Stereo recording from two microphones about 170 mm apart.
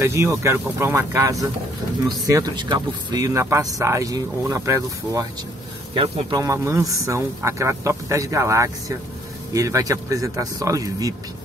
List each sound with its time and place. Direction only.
0.0 s speech: 15° right (ahead or behind)
6.3 s speech: 20° right (ahead or behind)